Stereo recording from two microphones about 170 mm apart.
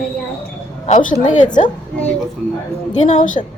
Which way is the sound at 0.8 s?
45° left (ahead or behind).